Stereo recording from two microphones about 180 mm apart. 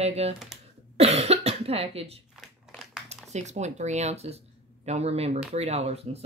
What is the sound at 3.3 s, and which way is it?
A woman's voice, 40° right (ahead or behind).